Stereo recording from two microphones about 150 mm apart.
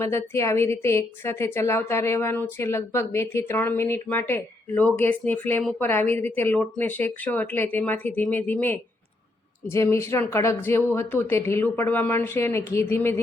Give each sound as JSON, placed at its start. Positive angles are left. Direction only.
{"t": 0.0, "sound": "a woman's voice", "side_deg": 15}